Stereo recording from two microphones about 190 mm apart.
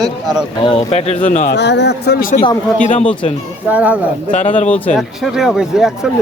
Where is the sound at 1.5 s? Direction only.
65° left (ahead or behind).